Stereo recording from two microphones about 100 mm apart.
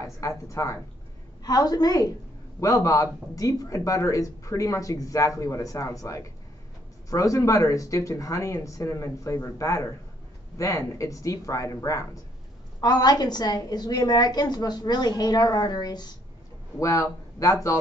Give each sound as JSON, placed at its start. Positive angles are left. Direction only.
{"t": 0.0, "sound": "a woman's voice", "side_deg": 30}
{"t": 16.8, "sound": "speech", "side_deg": 35}